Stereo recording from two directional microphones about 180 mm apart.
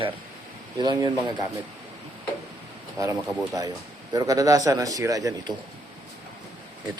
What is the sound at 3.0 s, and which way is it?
Speech, 20° right (ahead or behind).